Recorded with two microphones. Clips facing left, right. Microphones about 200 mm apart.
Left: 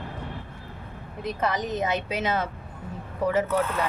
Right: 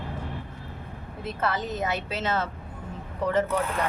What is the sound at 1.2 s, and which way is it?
Speech, 15° left (ahead or behind).